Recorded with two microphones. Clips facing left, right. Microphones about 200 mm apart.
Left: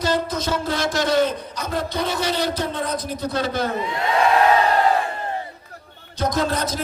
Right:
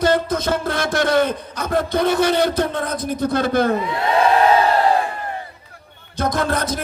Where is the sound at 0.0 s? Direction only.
55° right (ahead or behind).